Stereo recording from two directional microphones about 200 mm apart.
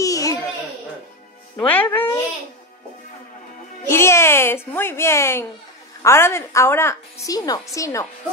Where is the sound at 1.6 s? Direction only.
10° left (ahead or behind).